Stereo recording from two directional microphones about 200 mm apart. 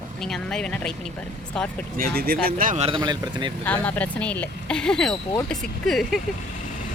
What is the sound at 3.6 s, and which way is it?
Speech, 5° left (ahead or behind).